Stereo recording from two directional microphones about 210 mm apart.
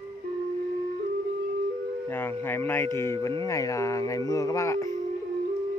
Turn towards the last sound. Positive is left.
turn(degrees=15)  # may be behind; listen again after turning